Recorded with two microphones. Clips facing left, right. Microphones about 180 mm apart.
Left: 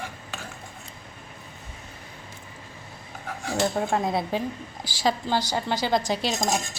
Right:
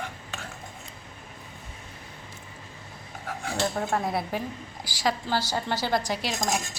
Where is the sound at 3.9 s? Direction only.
20° left (ahead or behind).